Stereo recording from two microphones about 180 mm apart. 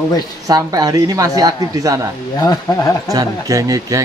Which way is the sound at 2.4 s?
20° left (ahead or behind).